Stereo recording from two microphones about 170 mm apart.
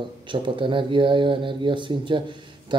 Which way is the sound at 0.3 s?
30° right (ahead or behind).